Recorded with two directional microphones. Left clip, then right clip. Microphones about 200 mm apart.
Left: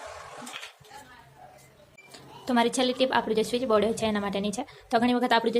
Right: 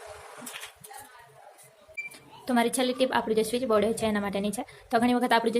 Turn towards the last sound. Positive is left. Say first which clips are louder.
# even
turn(degrees=0)  # may be behind; listen again after turning